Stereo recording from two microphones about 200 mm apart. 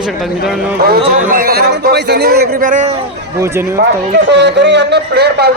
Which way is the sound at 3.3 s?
15° right (ahead or behind).